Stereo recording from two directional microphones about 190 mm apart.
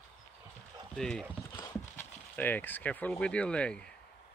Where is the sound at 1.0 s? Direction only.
5° left (ahead or behind).